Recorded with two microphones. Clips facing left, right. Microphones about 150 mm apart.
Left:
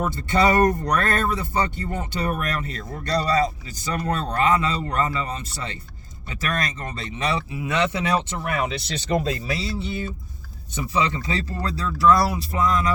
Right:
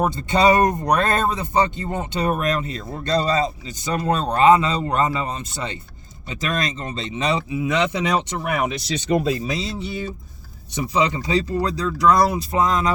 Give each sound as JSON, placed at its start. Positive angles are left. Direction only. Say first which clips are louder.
{"t": 0.0, "sound": "speech", "louder": "right 3 dB", "side_deg": -20}